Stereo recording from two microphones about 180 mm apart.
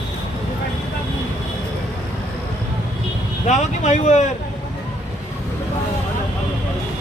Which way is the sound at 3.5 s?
40° left (ahead or behind).